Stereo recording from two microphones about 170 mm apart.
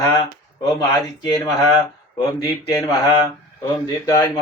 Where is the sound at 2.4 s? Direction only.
20° left (ahead or behind).